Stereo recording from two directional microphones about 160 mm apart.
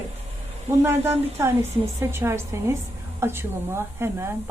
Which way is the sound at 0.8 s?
15° right (ahead or behind).